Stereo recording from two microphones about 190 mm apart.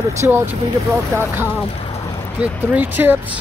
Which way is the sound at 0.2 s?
10° right (ahead or behind).